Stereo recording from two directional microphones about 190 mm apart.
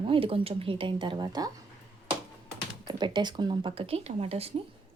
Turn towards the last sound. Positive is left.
turn(degrees=-35)  # may be behind; listen again after turning